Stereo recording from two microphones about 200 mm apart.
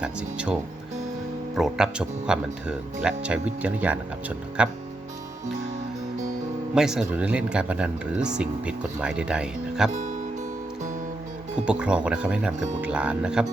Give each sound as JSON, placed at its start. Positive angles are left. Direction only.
{"t": 0.0, "sound": "speech", "side_deg": -5}
{"t": 1.5, "sound": "speech", "side_deg": 0}
{"t": 6.7, "sound": "speech", "side_deg": -5}
{"t": 9.9, "sound": "music", "side_deg": -40}
{"t": 11.6, "sound": "speech", "side_deg": -5}